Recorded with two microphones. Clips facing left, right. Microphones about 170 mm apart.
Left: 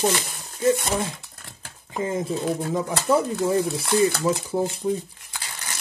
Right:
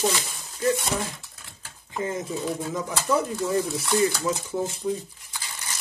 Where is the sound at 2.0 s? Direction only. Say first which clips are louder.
Left 3 dB; 25° left (ahead or behind).